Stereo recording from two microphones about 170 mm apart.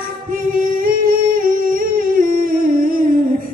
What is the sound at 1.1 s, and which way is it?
Humming, 55° right (ahead or behind).